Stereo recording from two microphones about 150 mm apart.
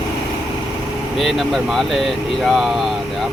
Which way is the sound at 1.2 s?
Centre (ahead or behind).